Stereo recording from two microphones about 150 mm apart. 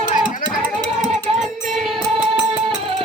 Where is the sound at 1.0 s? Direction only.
Centre (ahead or behind).